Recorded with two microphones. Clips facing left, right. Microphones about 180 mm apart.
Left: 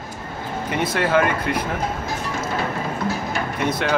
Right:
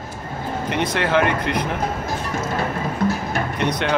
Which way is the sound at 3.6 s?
5° left (ahead or behind).